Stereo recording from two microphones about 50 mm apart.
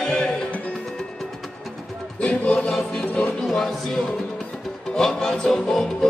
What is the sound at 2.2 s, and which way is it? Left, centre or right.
Choir, left.